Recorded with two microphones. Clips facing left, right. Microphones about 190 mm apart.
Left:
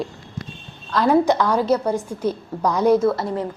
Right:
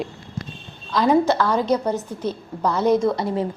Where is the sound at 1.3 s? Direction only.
15° left (ahead or behind).